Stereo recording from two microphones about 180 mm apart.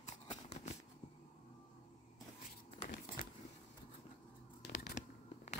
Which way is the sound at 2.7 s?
45° left (ahead or behind).